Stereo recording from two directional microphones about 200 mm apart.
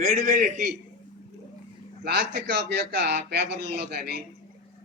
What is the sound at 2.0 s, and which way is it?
A man's voice, 50° right (ahead or behind).